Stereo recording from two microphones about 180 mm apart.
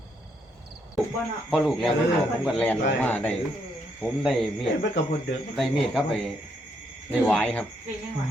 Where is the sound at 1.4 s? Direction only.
Centre (ahead or behind).